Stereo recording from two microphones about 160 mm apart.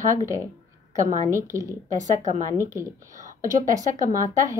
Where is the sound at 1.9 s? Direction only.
50° right (ahead or behind).